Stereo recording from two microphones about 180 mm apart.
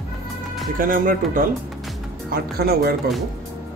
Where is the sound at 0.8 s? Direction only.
50° right (ahead or behind).